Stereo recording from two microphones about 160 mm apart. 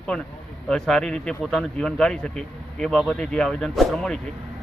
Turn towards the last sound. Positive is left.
turn(degrees=0)  # may be behind; listen again after turning